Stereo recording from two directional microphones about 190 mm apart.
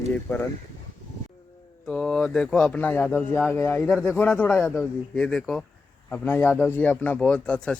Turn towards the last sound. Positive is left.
turn(degrees=5)  # may be behind; listen again after turning